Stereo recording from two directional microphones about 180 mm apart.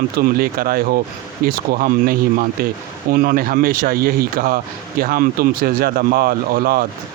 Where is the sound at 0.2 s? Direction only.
55° right (ahead or behind).